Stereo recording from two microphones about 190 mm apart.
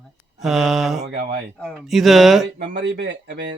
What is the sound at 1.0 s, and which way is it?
Speech, 55° right (ahead or behind).